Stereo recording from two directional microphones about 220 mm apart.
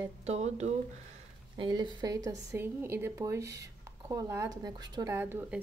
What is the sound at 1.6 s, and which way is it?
A woman's voice, 20° right (ahead or behind).